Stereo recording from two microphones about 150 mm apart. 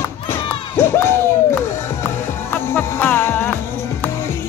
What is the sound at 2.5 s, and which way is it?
Music, 15° left (ahead or behind).